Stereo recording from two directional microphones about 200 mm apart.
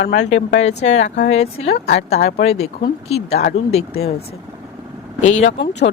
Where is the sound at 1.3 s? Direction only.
30° left (ahead or behind).